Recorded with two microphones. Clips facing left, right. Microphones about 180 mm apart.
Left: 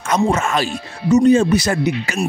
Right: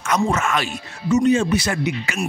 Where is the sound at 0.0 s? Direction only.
30° left (ahead or behind).